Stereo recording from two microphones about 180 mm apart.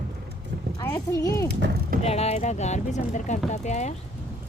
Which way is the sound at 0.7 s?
15° left (ahead or behind).